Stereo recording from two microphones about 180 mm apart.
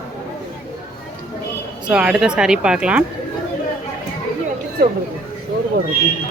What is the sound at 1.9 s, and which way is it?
Speech, 5° right (ahead or behind).